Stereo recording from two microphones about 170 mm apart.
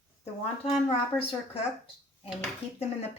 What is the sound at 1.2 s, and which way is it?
Speech, 35° left (ahead or behind).